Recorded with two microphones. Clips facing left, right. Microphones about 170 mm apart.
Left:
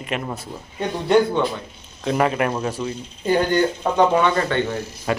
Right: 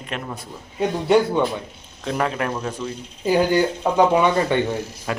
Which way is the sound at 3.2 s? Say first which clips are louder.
Right 1 dB; 10° right (ahead or behind).